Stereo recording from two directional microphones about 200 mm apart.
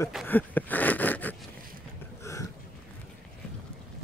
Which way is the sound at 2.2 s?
15° left (ahead or behind).